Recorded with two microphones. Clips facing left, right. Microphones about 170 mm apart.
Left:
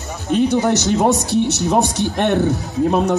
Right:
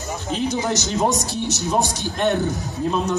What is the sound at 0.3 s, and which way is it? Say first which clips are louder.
Speech: left 8 dB; 65° left (ahead or behind).